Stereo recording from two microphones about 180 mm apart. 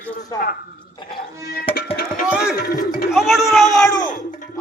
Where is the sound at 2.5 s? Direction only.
55° left (ahead or behind).